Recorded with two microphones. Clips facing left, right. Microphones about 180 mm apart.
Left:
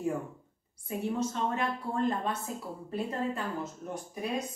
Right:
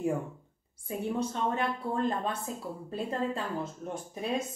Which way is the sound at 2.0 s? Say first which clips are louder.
Even; 30° right (ahead or behind).